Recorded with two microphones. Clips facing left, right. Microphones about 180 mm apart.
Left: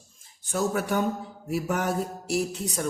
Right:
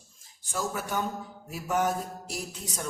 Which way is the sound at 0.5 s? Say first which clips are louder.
Left 6 dB; 60° left (ahead or behind).